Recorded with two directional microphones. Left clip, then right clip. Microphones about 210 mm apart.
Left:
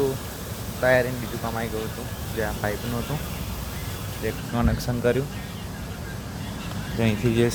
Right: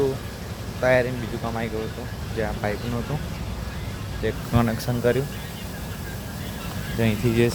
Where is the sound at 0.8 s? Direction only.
10° right (ahead or behind).